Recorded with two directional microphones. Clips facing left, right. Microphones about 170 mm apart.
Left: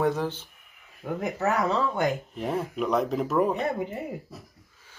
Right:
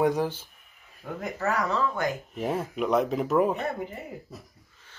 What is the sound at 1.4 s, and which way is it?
Speech, 20° left (ahead or behind).